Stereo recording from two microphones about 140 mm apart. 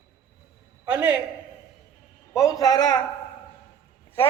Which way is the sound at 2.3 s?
25° left (ahead or behind).